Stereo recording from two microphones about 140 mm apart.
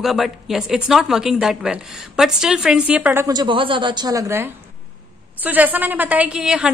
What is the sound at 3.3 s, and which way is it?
A woman's voice, 35° right (ahead or behind).